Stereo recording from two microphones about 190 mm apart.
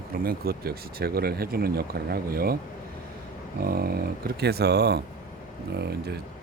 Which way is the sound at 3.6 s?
55° right (ahead or behind).